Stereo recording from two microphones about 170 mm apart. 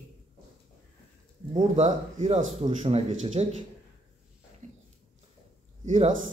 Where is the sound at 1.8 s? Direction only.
40° right (ahead or behind).